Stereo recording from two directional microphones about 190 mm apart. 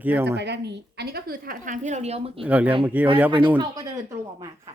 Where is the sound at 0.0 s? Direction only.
10° right (ahead or behind).